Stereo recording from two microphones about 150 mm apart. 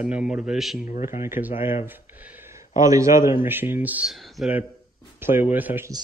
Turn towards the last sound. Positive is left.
turn(degrees=-15)  # may be behind; listen again after turning